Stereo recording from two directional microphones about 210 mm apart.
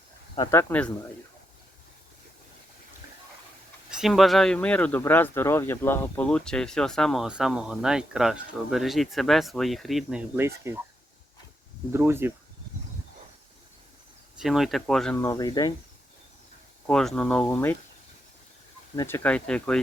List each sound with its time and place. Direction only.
0.3 s speech: 20° left (ahead or behind)
3.9 s speech: centre (ahead or behind)
11.9 s speech: 10° right (ahead or behind)
14.3 s speech: centre (ahead or behind)
15.2 s speech: 15° left (ahead or behind)
16.8 s speech: 5° left (ahead or behind)
18.9 s speech: 10° left (ahead or behind)